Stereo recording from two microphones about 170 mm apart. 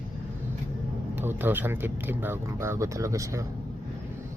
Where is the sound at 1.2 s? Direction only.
10° right (ahead or behind).